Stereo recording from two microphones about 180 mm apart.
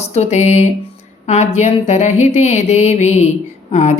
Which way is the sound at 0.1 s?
40° left (ahead or behind).